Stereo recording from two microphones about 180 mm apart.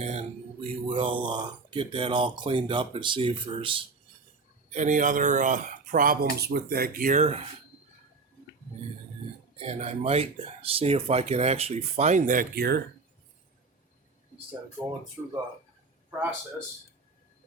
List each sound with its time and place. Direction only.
0.0 s speech: 35° right (ahead or behind)
4.7 s speech: 45° right (ahead or behind)
9.6 s speech: 35° right (ahead or behind); by 12.8 s 60° right (ahead or behind)